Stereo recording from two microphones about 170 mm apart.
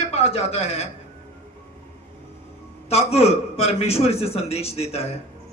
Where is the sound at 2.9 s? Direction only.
35° left (ahead or behind).